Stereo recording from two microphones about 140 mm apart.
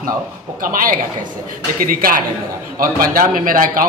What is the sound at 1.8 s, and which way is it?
A man's voice, 90° right.